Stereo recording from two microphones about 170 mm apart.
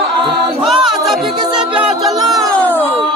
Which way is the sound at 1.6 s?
5° right (ahead or behind).